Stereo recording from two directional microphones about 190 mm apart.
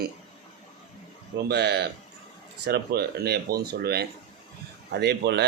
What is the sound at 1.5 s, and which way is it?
Speech, 60° right (ahead or behind).